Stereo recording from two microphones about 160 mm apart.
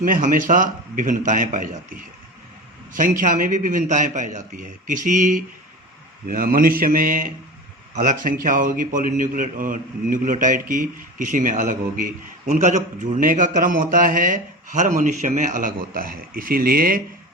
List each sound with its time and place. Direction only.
0.0 s a man's voice: 55° right (ahead or behind)
2.9 s a man's voice: 55° right (ahead or behind)
6.2 s a man's voice: 60° right (ahead or behind)